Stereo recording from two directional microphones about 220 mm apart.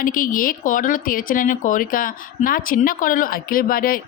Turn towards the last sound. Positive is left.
turn(degrees=40)  # may be behind; listen again after turning